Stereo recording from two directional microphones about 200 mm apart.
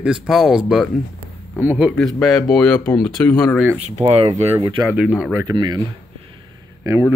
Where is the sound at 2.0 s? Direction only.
5° left (ahead or behind).